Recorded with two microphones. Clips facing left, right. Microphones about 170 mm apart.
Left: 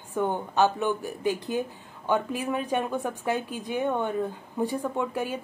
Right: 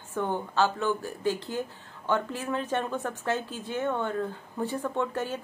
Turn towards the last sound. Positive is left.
turn(degrees=10)  # may be behind; listen again after turning